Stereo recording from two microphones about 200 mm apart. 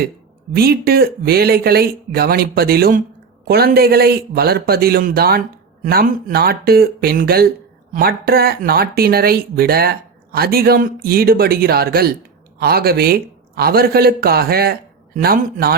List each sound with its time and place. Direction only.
0.5 s speech: 50° right (ahead or behind)